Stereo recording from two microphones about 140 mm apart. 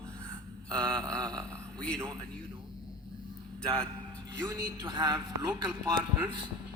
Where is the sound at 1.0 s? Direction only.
25° right (ahead or behind).